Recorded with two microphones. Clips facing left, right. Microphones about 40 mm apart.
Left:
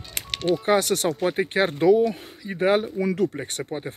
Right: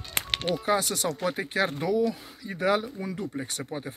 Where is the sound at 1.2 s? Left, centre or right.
Left.